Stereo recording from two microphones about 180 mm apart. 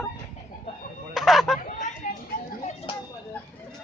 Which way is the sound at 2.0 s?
50° left (ahead or behind).